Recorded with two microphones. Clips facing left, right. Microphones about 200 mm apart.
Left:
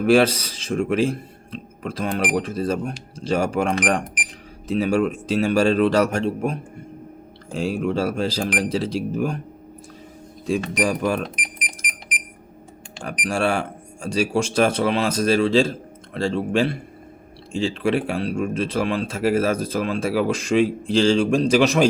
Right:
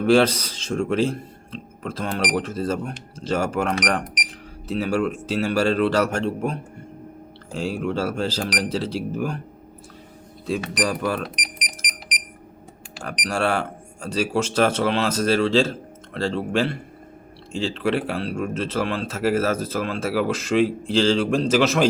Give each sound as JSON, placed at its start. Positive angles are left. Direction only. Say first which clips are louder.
{"t": 0.0, "sound": "speech", "louder": "left 1 dB", "side_deg": 10}
{"t": 10.8, "sound": "speech", "louder": "left 2 dB", "side_deg": 15}
{"t": 13.0, "sound": "speech", "louder": "left 1 dB", "side_deg": 10}